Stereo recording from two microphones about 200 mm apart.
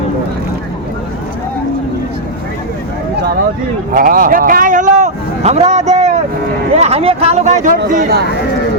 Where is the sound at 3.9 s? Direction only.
45° right (ahead or behind).